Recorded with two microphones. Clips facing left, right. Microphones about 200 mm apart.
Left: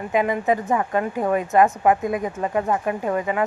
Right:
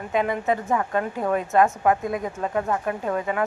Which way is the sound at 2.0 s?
Centre (ahead or behind).